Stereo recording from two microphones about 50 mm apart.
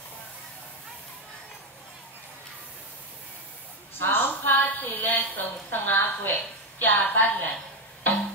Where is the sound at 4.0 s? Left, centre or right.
Left.